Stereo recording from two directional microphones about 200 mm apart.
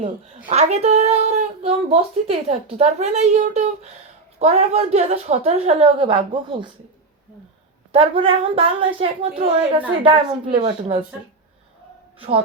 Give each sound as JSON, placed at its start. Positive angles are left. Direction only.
{"t": 0.4, "sound": "speech", "side_deg": -30}
{"t": 7.9, "sound": "a woman's voice", "side_deg": -25}